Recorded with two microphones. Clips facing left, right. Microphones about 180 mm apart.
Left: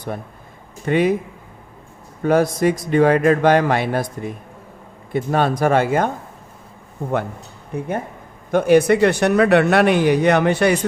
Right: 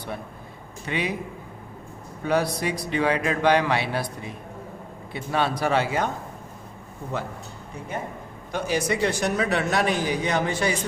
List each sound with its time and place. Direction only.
0.9 s a man's voice: 50° left (ahead or behind)
2.2 s a man's voice: 45° left (ahead or behind)
7.7 s speech: 55° left (ahead or behind)